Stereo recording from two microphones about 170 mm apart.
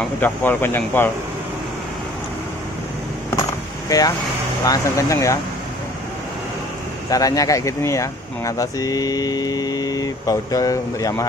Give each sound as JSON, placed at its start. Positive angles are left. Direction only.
{"t": 0.2, "sound": "speech", "side_deg": 10}
{"t": 3.9, "sound": "speech", "side_deg": 20}
{"t": 7.1, "sound": "speech", "side_deg": 20}